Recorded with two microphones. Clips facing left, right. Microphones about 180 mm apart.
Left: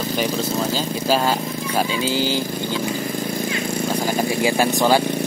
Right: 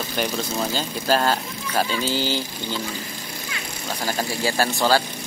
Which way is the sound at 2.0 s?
45° left (ahead or behind).